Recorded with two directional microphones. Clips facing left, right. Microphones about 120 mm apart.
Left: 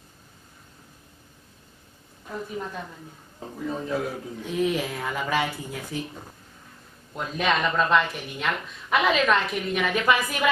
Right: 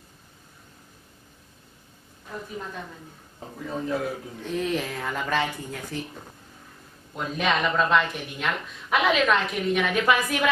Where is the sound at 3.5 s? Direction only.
Centre (ahead or behind).